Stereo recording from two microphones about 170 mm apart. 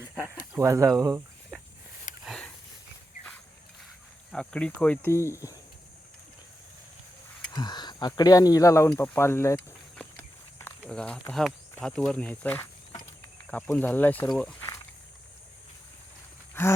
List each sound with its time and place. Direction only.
0.2 s speech: 10° right (ahead or behind)
2.2 s a sound: centre (ahead or behind)
4.3 s speech: 5° left (ahead or behind)
7.5 s speech: 25° left (ahead or behind)
9.9 s walk: 10° left (ahead or behind)
11.3 s speech: 5° left (ahead or behind)